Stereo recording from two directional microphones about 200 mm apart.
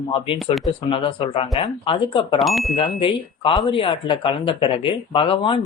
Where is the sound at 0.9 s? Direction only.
25° left (ahead or behind).